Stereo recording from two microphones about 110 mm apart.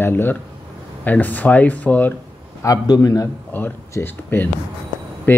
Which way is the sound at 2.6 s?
30° left (ahead or behind).